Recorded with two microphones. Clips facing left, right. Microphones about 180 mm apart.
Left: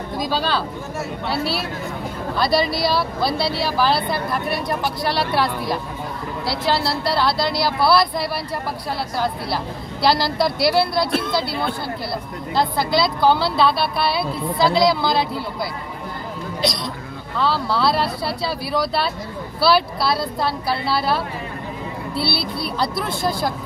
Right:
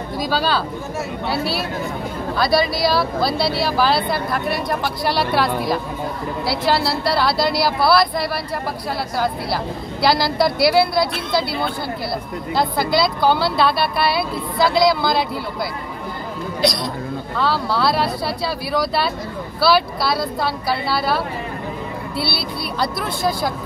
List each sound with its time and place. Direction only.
0.2 s speech: 5° right (ahead or behind)
10.0 s speech: centre (ahead or behind)
12.5 s speech: 5° right (ahead or behind)
14.6 s speech: 25° left (ahead or behind)
17.4 s speech: centre (ahead or behind)
22.1 s speech: 30° left (ahead or behind)
22.8 s speech: centre (ahead or behind)